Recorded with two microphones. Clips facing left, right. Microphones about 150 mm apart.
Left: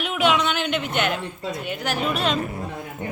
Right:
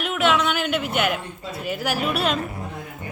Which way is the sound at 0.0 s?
Centre (ahead or behind).